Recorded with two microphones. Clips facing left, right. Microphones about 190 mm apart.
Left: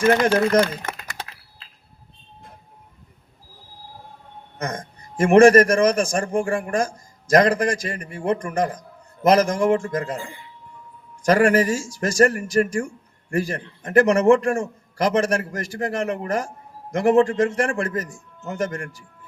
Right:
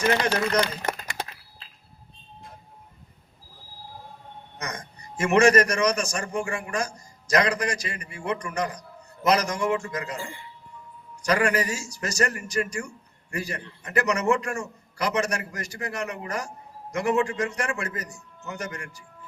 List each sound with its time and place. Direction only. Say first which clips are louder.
0.0 s speech: left 6 dB; 50° left (ahead or behind)
4.5 s speech: left 7 dB; 50° left (ahead or behind)
10.2 s speech: left 2 dB; 20° left (ahead or behind)
11.3 s speech: left 7 dB; 50° left (ahead or behind)